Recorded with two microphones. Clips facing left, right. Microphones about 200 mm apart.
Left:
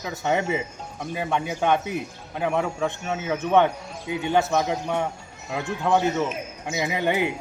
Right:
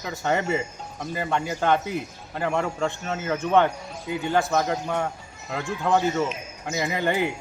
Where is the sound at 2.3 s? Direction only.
5° left (ahead or behind).